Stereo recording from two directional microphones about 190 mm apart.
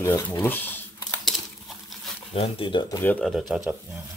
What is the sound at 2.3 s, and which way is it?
Speech, 30° left (ahead or behind).